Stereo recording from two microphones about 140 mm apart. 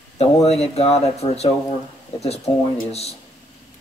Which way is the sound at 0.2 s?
50° left (ahead or behind).